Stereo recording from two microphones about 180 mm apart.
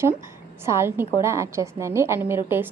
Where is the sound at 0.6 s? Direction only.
15° right (ahead or behind).